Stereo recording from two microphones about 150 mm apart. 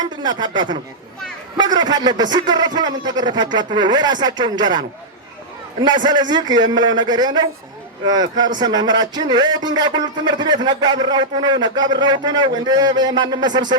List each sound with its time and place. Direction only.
0.0 s a man's voice: 30° right (ahead or behind)